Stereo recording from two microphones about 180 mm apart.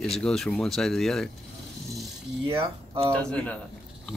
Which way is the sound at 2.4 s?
30° right (ahead or behind).